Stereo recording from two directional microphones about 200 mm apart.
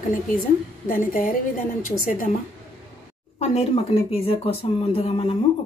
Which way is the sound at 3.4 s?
30° left (ahead or behind).